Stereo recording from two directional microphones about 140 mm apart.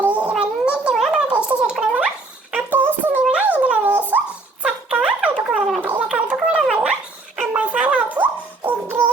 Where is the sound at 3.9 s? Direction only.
10° right (ahead or behind).